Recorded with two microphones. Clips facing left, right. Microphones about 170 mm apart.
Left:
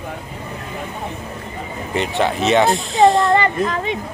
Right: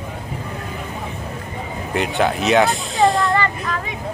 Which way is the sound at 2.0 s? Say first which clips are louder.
Even; centre (ahead or behind).